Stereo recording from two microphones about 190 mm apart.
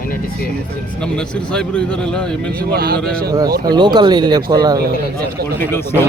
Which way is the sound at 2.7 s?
50° right (ahead or behind).